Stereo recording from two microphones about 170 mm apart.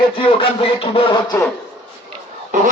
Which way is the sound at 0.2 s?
30° left (ahead or behind).